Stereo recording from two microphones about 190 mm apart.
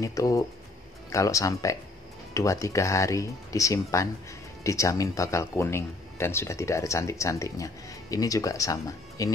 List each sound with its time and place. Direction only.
0.0 s speech: 15° left (ahead or behind)